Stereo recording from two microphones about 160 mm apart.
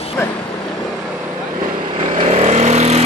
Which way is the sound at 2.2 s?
40° right (ahead or behind).